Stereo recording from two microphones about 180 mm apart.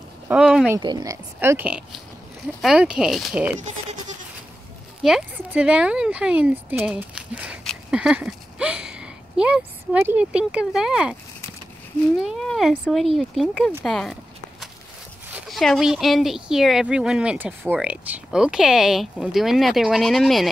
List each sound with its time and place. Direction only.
0.3 s speech: 5° right (ahead or behind)
0.7 s speech: 25° right (ahead or behind); by 3.5 s 5° right (ahead or behind)
5.0 s speech: 5° right (ahead or behind)
12.2 s speech: centre (ahead or behind)
15.3 s speech: centre (ahead or behind)